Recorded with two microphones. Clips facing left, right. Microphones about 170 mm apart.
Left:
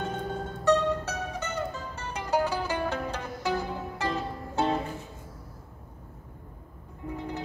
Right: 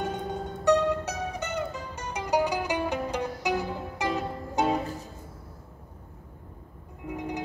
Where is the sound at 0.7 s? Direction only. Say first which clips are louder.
Right 1 dB; 15° right (ahead or behind).